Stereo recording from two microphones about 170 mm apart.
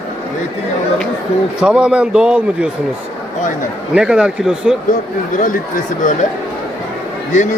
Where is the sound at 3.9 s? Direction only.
5° right (ahead or behind).